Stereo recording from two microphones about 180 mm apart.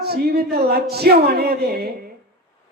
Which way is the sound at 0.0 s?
60° right (ahead or behind).